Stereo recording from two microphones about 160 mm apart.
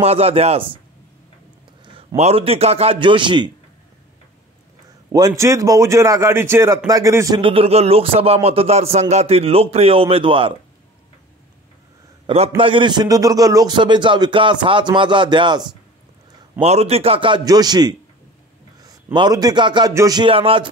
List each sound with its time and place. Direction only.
0.0 s speech: 40° right (ahead or behind)
2.0 s speech: 40° right (ahead or behind)
5.1 s a man's voice: 20° right (ahead or behind)
7.3 s speech: 35° right (ahead or behind)
12.3 s a man's voice: 35° right (ahead or behind)
16.5 s speech: 40° right (ahead or behind); by 17.9 s 25° right (ahead or behind)
19.1 s a man's voice: 25° right (ahead or behind)